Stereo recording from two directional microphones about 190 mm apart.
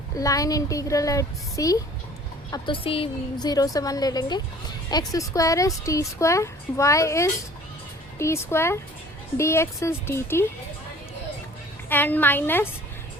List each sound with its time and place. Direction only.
0.2 s a woman's voice: 15° left (ahead or behind)
11.9 s a woman's voice: 10° left (ahead or behind)